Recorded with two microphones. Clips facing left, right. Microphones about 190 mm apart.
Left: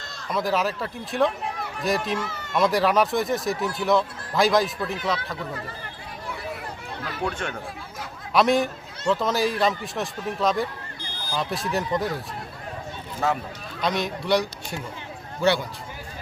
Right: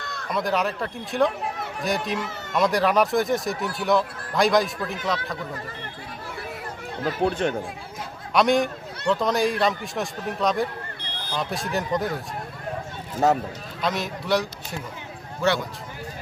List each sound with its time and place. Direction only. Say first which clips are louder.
0.0 s a sound: right 5 dB; 60° right (ahead or behind)
0.3 s speech: even; centre (ahead or behind)
7.0 s speech: right 7 dB; 35° right (ahead or behind)
8.3 s speech: even; centre (ahead or behind)
13.1 s speech: right 5 dB; 40° right (ahead or behind)
13.8 s speech: left 1 dB; centre (ahead or behind)